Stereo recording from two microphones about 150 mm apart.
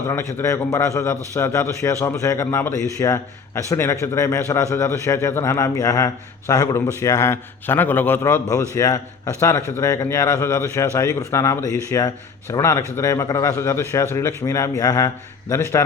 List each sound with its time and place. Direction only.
0.1 s a man's voice: 20° left (ahead or behind)